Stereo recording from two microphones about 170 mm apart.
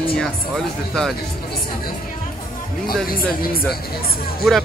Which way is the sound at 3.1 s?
60° left (ahead or behind).